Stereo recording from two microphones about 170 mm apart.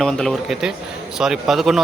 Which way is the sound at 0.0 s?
Centre (ahead or behind).